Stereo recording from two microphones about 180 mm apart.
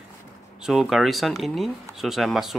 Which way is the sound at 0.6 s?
Centre (ahead or behind).